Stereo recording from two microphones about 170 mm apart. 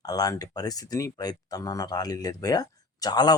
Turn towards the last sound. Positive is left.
turn(degrees=25)  # may be behind; listen again after turning